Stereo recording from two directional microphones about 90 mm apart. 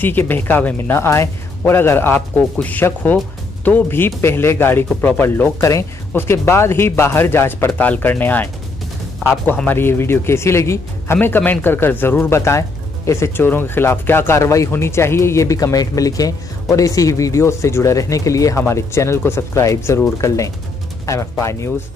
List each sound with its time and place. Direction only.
0.0 s speech: 20° left (ahead or behind)
5.6 s speech: 35° left (ahead or behind)
9.7 s speech: 25° left (ahead or behind)